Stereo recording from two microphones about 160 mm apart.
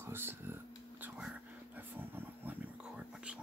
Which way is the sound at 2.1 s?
10° right (ahead or behind).